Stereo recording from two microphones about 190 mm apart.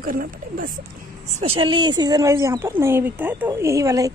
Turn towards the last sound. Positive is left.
turn(degrees=-15)  # may be behind; listen again after turning